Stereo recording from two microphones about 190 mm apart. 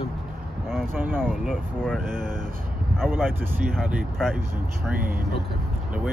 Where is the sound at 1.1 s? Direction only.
5° left (ahead or behind).